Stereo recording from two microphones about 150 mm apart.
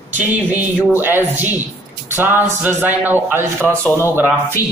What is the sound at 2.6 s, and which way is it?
Speech, 15° right (ahead or behind).